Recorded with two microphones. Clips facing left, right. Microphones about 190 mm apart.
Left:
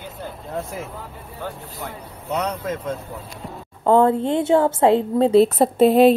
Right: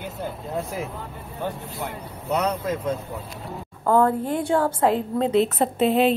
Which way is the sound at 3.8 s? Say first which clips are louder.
Left 4 dB; 25° left (ahead or behind).